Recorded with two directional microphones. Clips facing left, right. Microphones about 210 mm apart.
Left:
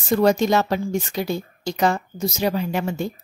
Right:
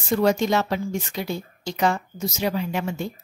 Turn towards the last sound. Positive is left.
turn(degrees=40)  # may be behind; listen again after turning